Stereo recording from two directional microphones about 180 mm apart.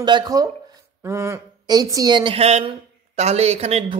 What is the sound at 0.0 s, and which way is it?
Speech, 25° right (ahead or behind).